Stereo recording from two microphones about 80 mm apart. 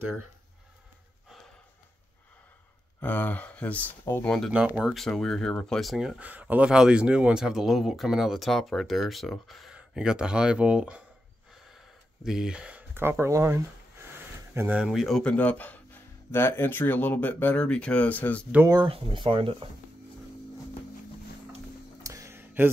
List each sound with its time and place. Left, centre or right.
3.0 s speech: left; by 4.5 s centre
4.5 s speech: centre
4.8 s speech: centre
6.1 s speech: centre
11.7 s a sound: centre
13.2 s speech: right
14.9 s speech: centre
15.2 s speech: centre
18.7 s speech: right
22.0 s music: right
22.4 s a sound: right